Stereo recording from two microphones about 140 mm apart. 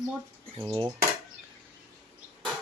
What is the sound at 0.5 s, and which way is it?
Speech, 35° right (ahead or behind).